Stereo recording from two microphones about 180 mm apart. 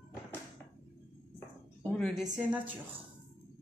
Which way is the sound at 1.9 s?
5° left (ahead or behind).